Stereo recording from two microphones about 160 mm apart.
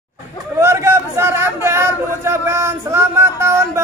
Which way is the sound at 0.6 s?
15° right (ahead or behind).